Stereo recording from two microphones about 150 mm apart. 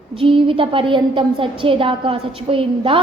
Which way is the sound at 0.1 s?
35° right (ahead or behind).